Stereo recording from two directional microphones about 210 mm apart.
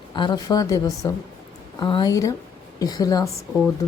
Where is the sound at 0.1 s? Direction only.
20° left (ahead or behind).